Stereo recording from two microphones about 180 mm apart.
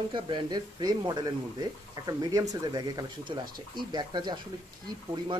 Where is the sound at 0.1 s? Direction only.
25° right (ahead or behind).